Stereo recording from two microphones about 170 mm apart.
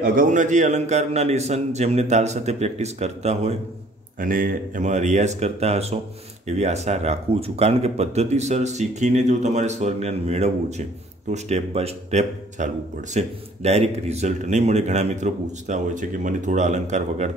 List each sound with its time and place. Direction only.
0.0 s speech: 55° right (ahead or behind)
4.2 s speech: 55° right (ahead or behind)